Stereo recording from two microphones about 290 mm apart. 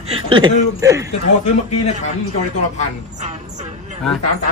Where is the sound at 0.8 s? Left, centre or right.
Centre.